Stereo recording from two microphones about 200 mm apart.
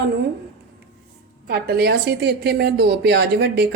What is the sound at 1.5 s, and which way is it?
A woman's voice, 50° right (ahead or behind).